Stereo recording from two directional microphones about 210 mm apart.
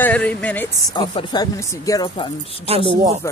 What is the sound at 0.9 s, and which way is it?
Speech, 20° left (ahead or behind).